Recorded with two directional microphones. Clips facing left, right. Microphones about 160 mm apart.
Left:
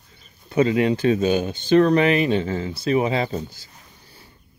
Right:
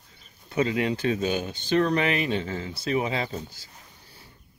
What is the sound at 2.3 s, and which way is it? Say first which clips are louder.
Speech: left 6 dB; 75° left (ahead or behind).